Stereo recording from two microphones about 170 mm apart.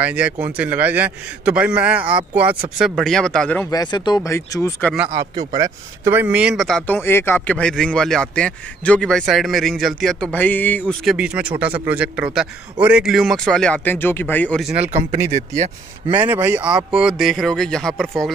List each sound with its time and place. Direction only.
0.0 s a man's voice: 10° right (ahead or behind)
3.7 s speech: 25° left (ahead or behind)
5.3 s a man's voice: 25° right (ahead or behind); by 6.8 s centre (ahead or behind)
6.9 s speech: 15° left (ahead or behind)
11.1 s a man's voice: 5° right (ahead or behind)
14.9 s speech: 40° right (ahead or behind)
16.1 s a man's voice: 10° right (ahead or behind)